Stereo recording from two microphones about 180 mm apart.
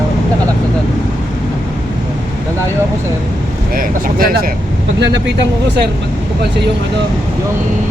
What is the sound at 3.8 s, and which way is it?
Speech, 55° right (ahead or behind).